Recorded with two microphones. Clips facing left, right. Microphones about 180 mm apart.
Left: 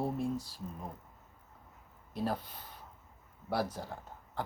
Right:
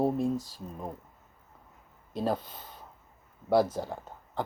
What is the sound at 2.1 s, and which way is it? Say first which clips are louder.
Speech: right 5 dB; 20° right (ahead or behind).